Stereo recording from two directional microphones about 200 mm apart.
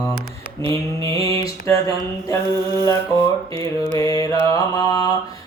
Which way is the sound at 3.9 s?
15° left (ahead or behind).